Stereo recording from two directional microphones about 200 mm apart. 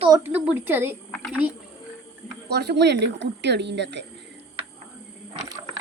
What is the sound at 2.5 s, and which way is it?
A child's voice, 55° right (ahead or behind).